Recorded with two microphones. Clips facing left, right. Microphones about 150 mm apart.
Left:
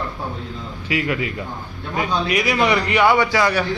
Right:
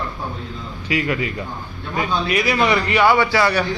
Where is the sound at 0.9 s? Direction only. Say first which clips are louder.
Right 1 dB; 5° left (ahead or behind).